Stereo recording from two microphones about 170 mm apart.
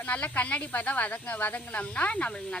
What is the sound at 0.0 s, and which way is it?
Speech, 10° left (ahead or behind).